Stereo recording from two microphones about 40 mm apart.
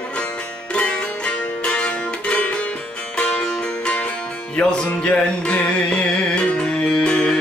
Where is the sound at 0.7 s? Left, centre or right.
Left.